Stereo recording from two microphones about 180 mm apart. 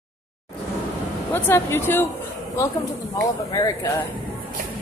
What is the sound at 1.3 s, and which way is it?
Speech, 10° left (ahead or behind).